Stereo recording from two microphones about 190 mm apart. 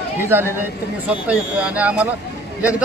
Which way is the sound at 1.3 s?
5° right (ahead or behind).